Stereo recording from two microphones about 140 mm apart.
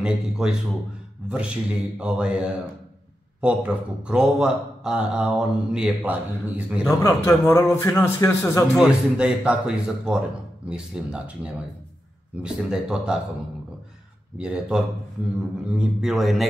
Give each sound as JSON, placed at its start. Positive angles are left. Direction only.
{"t": 0.0, "sound": "a man's voice", "side_deg": -5}
{"t": 7.0, "sound": "a man's voice", "side_deg": 20}
{"t": 8.7, "sound": "a man's voice", "side_deg": -5}
{"t": 14.4, "sound": "a man's voice", "side_deg": -5}